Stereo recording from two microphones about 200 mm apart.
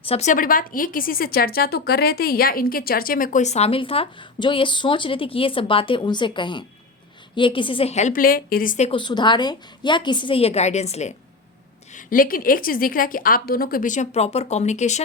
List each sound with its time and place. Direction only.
0.1 s speech: 35° left (ahead or behind)
8.9 s a woman's voice: 25° left (ahead or behind)
11.9 s a woman's voice: 45° left (ahead or behind)